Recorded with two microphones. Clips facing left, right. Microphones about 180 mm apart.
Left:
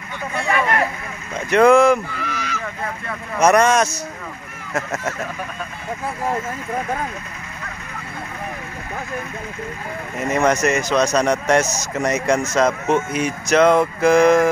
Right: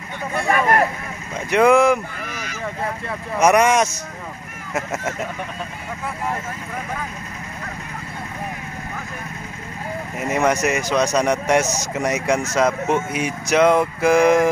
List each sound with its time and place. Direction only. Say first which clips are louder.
0.5 s vehicle: right 2 dB; 45° right (ahead or behind)
1.5 s speech: left 2 dB; 10° right (ahead or behind)
2.1 s a sound: left 4 dB; 50° right (ahead or behind)
3.3 s speech: left 1 dB; 15° right (ahead or behind)
4.9 s speech: even; 20° right (ahead or behind)
10.2 s speech: left 2 dB; 10° right (ahead or behind)